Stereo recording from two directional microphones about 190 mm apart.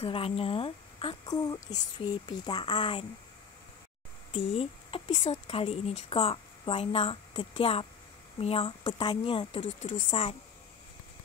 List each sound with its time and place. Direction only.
0.0 s a woman's voice: 30° left (ahead or behind)
4.3 s a woman's voice: 30° left (ahead or behind)